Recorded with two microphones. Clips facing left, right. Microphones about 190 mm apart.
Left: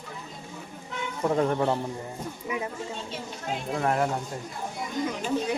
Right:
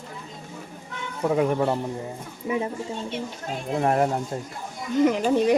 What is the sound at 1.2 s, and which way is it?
Speech, 10° right (ahead or behind).